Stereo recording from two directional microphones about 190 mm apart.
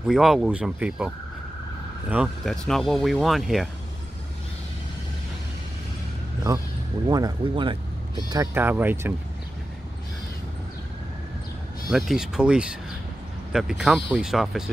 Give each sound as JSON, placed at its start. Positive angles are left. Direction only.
{"t": 0.1, "sound": "speech", "side_deg": 0}
{"t": 7.1, "sound": "speech", "side_deg": -20}
{"t": 11.9, "sound": "speech", "side_deg": 0}